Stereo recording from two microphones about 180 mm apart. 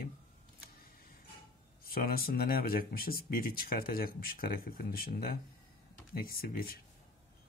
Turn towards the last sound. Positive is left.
turn(degrees=55)  # may be behind; listen again after turning